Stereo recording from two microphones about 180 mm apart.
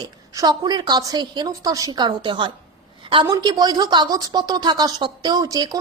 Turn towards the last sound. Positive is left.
turn(degrees=-20)  # may be behind; listen again after turning